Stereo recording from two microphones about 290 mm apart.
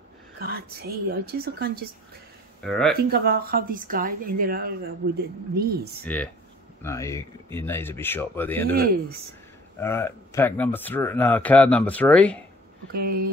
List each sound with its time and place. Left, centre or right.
0.4 s speech: right
2.6 s speech: centre
3.0 s speech: right
6.1 s speech: centre
8.7 s speech: right
9.8 s speech: centre
12.9 s speech: right